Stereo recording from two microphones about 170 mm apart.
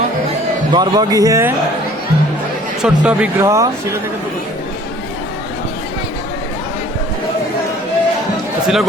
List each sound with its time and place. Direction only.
0.7 s a man's voice: 25° right (ahead or behind)
2.8 s speech: 5° right (ahead or behind)
3.4 s speech: 20° right (ahead or behind)
8.6 s speech: centre (ahead or behind)